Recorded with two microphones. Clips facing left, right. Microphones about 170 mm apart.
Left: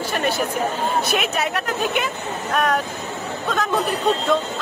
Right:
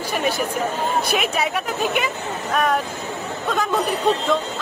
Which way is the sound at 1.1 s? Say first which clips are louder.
Even; centre (ahead or behind).